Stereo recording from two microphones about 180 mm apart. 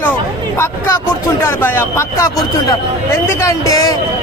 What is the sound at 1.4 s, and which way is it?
Speech, 10° left (ahead or behind).